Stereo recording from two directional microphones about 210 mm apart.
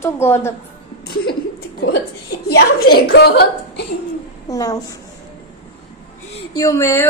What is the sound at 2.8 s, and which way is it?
A woman's voice, 50° left (ahead or behind).